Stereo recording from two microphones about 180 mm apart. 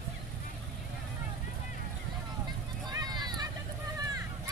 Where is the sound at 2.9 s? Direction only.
20° right (ahead or behind).